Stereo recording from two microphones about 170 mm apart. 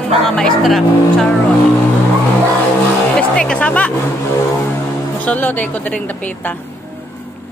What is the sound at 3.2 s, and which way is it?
Speech, 5° left (ahead or behind).